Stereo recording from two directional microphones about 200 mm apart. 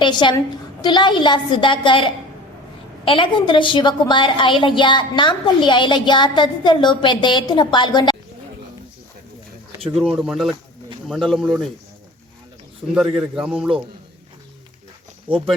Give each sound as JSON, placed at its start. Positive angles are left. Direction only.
{"t": 0.0, "sound": "a woman's voice", "side_deg": 25}
{"t": 9.9, "sound": "a man's voice", "side_deg": -5}
{"t": 13.1, "sound": "a man's voice", "side_deg": -5}